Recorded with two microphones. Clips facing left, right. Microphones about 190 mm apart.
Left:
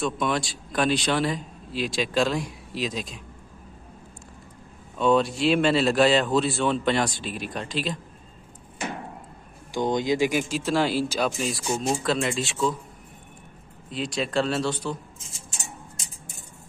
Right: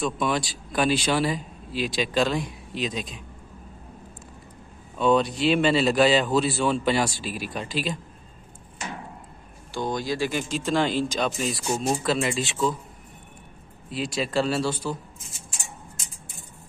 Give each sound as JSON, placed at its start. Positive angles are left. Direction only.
{"t": 0.0, "sound": "speech", "side_deg": -5}
{"t": 4.9, "sound": "speech", "side_deg": 0}
{"t": 9.7, "sound": "speech", "side_deg": 20}
{"t": 10.5, "sound": "speech", "side_deg": 5}
{"t": 13.8, "sound": "speech", "side_deg": -5}
{"t": 15.1, "sound": "speech", "side_deg": 30}